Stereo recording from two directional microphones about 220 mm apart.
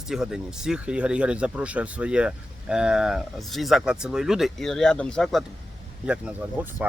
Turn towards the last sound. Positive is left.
turn(degrees=-5)  # may be behind; listen again after turning